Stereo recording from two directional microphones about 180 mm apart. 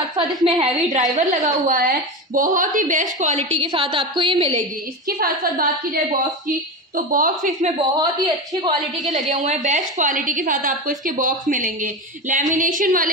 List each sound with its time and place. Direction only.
0.4 s a woman's voice: 20° right (ahead or behind)
1.1 s a woman's voice: 50° right (ahead or behind)
3.6 s a woman's voice: 30° right (ahead or behind)
5.2 s a woman's voice: 50° right (ahead or behind)
7.0 s a woman's voice: 50° right (ahead or behind)
7.9 s a woman's voice: 25° right (ahead or behind)
9.3 s a woman's voice: 40° right (ahead or behind)